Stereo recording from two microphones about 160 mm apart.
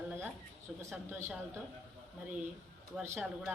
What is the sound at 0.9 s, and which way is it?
Speech, 15° right (ahead or behind).